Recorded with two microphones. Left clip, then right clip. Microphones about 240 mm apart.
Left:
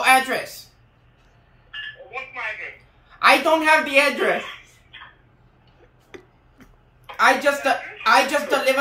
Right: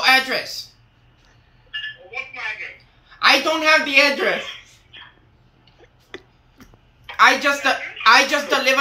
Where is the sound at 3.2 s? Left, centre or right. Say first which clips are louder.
Even; centre.